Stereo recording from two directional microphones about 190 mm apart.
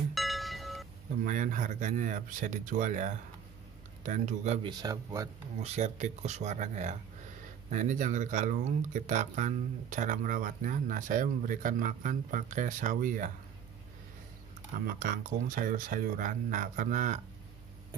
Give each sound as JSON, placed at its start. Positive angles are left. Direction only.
{"t": 0.1, "sound": "a sound", "side_deg": 0}
{"t": 1.2, "sound": "speech", "side_deg": -45}
{"t": 4.6, "sound": "speech", "side_deg": -20}
{"t": 5.6, "sound": "speech", "side_deg": -35}
{"t": 14.9, "sound": "speech", "side_deg": -45}